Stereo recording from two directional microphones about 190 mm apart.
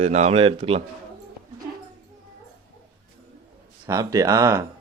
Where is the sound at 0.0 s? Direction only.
35° right (ahead or behind).